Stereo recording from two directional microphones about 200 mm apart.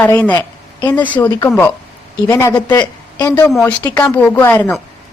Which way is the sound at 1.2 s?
20° left (ahead or behind).